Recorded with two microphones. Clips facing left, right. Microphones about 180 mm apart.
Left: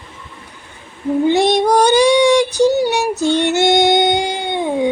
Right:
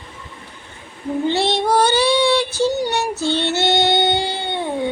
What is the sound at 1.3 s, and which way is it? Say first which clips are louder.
Child singing: left 5 dB; 15° left (ahead or behind).